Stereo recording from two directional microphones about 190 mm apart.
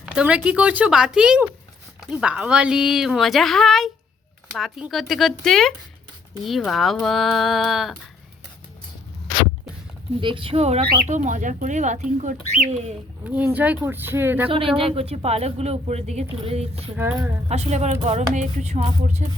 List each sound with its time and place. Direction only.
0.0 s a woman's voice: 5° right (ahead or behind)
10.2 s speech: 25° right (ahead or behind)
13.2 s speech: 10° right (ahead or behind)
14.8 s speech: 30° right (ahead or behind)
17.0 s speech: 10° right (ahead or behind)
17.5 s speech: 35° right (ahead or behind)